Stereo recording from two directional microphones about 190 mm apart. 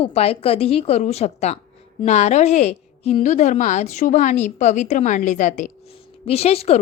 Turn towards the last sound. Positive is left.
turn(degrees=35)  # may be behind; listen again after turning